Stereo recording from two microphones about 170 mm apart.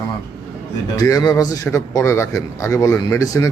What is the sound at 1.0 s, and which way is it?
A man's voice, 20° left (ahead or behind).